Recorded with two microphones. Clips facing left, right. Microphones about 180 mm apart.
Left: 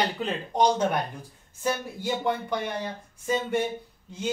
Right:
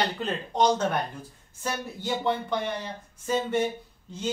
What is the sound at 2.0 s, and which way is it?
Speech, 10° left (ahead or behind).